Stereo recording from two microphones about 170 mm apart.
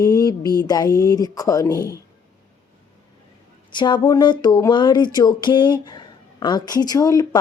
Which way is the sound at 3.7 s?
25° left (ahead or behind).